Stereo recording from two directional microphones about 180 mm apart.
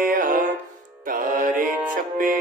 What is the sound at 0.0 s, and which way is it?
Music, 50° right (ahead or behind).